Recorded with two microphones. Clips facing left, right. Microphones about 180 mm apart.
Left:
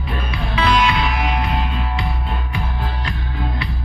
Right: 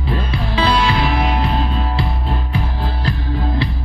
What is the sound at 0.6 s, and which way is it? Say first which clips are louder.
Music: right 1 dB; 30° right (ahead or behind).